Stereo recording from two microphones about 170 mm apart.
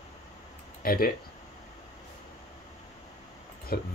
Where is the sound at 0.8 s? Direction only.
60° left (ahead or behind).